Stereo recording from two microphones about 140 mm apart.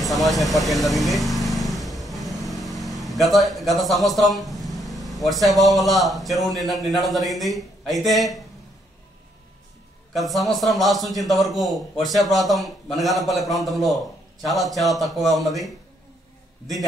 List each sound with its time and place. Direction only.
0.0 s speech: centre (ahead or behind)
10.1 s a man's voice: centre (ahead or behind)